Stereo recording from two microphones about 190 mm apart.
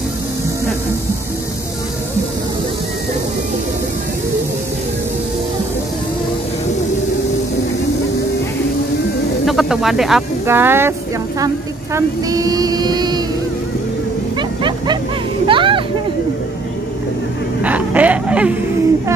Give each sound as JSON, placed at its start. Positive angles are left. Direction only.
{"t": 9.5, "sound": "a woman's voice", "side_deg": 0}
{"t": 15.4, "sound": "a sound", "side_deg": -25}
{"t": 17.6, "sound": "speech", "side_deg": -10}